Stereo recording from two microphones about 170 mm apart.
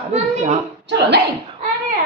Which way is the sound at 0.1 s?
45° right (ahead or behind).